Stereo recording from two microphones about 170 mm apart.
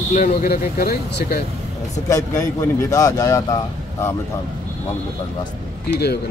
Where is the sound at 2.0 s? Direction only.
20° left (ahead or behind).